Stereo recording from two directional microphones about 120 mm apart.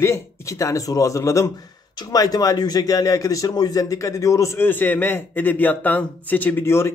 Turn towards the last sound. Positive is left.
turn(degrees=20)  # may be behind; listen again after turning